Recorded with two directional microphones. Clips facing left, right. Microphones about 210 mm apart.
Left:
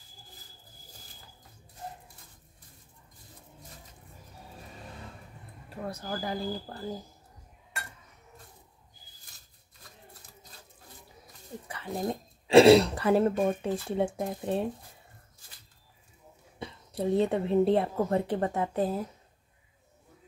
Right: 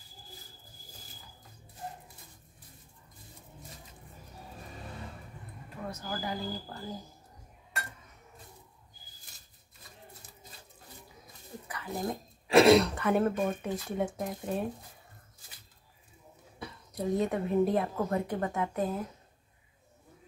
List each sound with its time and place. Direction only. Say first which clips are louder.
5.9 s speech: left 2 dB; 35° left (ahead or behind)
11.6 s speech: left 2 dB; 30° left (ahead or behind)
16.5 s speech: left 3 dB; 25° left (ahead or behind)